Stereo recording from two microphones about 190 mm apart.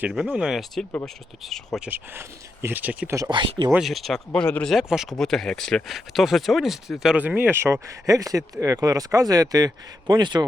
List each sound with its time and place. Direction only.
0.0 s speech: 5° right (ahead or behind)
3.2 s speech: 25° right (ahead or behind)
3.7 s speech: centre (ahead or behind); by 10.4 s 25° right (ahead or behind)